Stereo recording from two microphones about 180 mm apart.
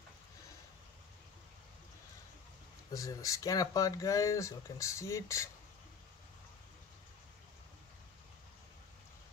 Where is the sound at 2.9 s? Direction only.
20° left (ahead or behind).